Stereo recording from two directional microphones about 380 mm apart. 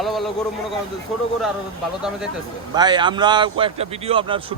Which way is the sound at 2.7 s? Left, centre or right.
Centre.